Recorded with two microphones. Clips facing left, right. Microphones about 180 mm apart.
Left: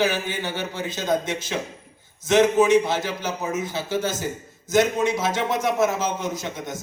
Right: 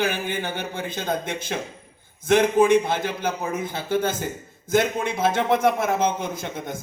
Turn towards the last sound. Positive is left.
turn(degrees=-55)  # may be behind; listen again after turning